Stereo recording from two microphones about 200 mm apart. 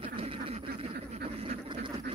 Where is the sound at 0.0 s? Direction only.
30° right (ahead or behind).